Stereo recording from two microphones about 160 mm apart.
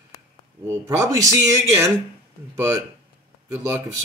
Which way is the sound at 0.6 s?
15° right (ahead or behind).